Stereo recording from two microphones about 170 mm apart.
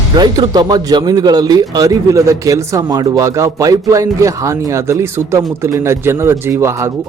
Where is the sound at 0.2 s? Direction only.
25° right (ahead or behind).